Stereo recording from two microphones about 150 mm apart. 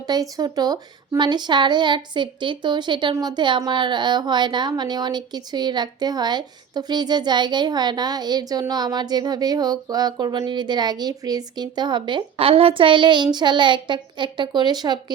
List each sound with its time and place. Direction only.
0.1 s a woman's voice: 25° right (ahead or behind)